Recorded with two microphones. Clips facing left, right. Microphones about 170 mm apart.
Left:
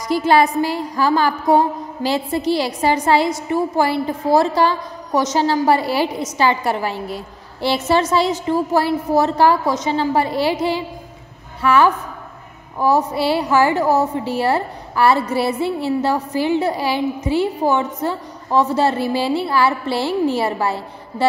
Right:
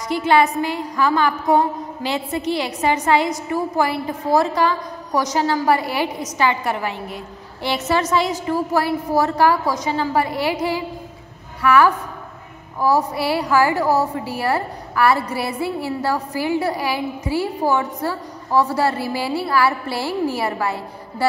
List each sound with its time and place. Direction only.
0.1 s a woman's voice: 35° left (ahead or behind)